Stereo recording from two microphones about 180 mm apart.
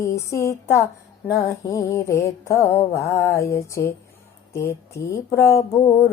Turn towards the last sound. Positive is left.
turn(degrees=15)  # may be behind; listen again after turning